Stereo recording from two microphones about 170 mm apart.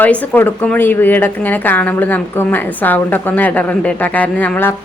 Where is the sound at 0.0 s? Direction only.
10° left (ahead or behind).